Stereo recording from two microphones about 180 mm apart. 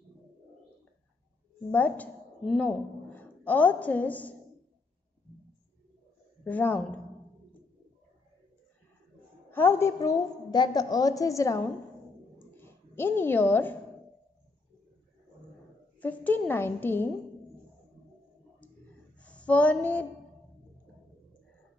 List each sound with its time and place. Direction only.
1.7 s a woman's voice: 10° left (ahead or behind)
6.4 s a woman's voice: 10° left (ahead or behind)
9.5 s a woman's voice: 10° left (ahead or behind)
12.4 s a sound: 10° left (ahead or behind)
16.0 s a woman's voice: 10° left (ahead or behind)
19.1 s a sound: 5° left (ahead or behind)